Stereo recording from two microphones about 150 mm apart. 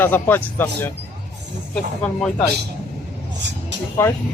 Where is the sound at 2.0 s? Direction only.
5° left (ahead or behind).